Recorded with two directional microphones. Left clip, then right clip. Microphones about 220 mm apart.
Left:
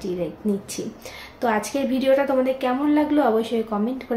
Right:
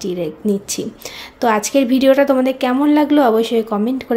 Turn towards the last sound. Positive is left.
turn(degrees=-50)  # may be behind; listen again after turning